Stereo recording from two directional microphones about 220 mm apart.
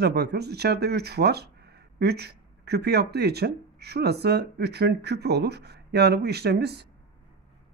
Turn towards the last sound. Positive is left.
turn(degrees=-50)  # may be behind; listen again after turning